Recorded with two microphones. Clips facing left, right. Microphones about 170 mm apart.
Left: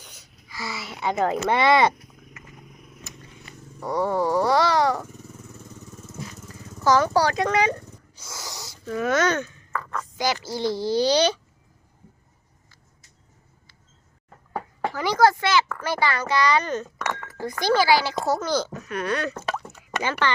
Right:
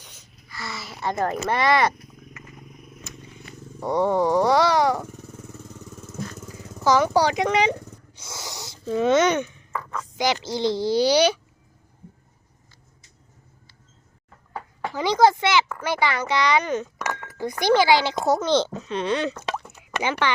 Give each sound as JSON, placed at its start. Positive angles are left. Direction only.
{"t": 0.0, "sound": "babbling", "side_deg": 0}
{"t": 0.4, "sound": "a child's voice", "side_deg": 10}
{"t": 1.5, "sound": "speech", "side_deg": 25}
{"t": 3.8, "sound": "speech", "side_deg": -20}
{"t": 6.8, "sound": "speech", "side_deg": -15}
{"t": 8.2, "sound": "a sound", "side_deg": -25}
{"t": 10.0, "sound": "speech", "side_deg": -15}
{"t": 14.9, "sound": "speech", "side_deg": -20}
{"t": 19.5, "sound": "plop", "side_deg": -20}